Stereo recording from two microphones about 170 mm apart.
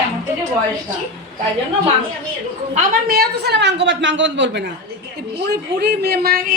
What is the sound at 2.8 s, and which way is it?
A woman's voice, 65° right (ahead or behind).